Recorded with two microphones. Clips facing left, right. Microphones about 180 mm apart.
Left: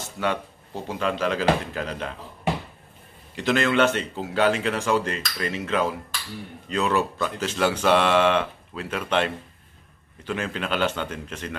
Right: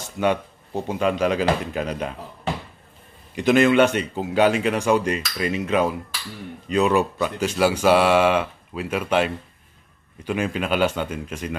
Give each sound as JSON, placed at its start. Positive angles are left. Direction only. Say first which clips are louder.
{"t": 0.0, "sound": "speech", "louder": "right 5 dB", "side_deg": -15}
{"t": 3.3, "sound": "speech", "louder": "right 5 dB", "side_deg": -15}